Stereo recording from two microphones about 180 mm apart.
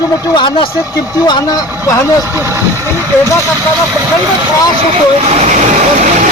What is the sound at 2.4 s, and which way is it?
Speech, 15° right (ahead or behind).